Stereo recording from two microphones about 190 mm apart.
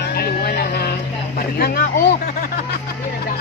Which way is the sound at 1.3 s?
55° left (ahead or behind).